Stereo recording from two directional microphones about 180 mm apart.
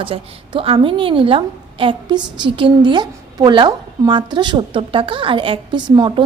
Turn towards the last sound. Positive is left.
turn(degrees=-25)  # may be behind; listen again after turning